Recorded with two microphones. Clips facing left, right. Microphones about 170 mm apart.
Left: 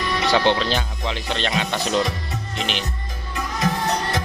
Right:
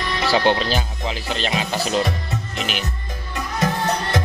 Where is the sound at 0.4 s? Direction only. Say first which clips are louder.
Right 2 dB; 45° right (ahead or behind).